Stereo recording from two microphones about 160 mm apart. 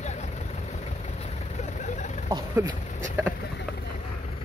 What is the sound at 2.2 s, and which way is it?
Vehicle, 25° right (ahead or behind).